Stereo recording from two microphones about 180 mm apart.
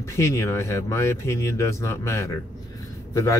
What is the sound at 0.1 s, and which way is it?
Speech, 15° left (ahead or behind).